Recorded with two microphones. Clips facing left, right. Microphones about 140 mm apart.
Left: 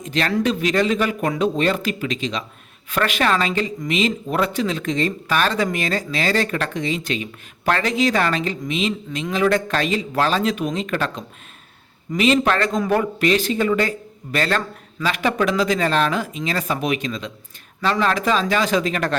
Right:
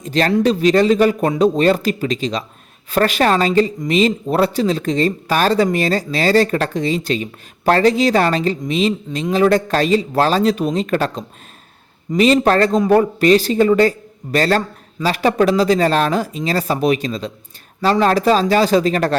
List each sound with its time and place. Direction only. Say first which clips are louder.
0.0 s a woman's voice: right 5 dB; 35° right (ahead or behind)